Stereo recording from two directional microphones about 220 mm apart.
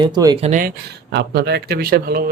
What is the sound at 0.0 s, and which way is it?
Speech, 20° right (ahead or behind).